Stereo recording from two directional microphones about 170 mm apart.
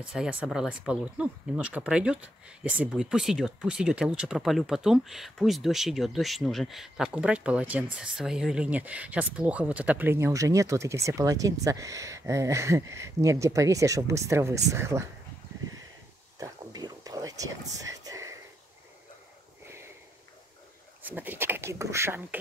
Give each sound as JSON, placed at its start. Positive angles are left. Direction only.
{"t": 0.0, "sound": "speech", "side_deg": -5}
{"t": 16.3, "sound": "a sound", "side_deg": -20}
{"t": 21.0, "sound": "speech", "side_deg": -10}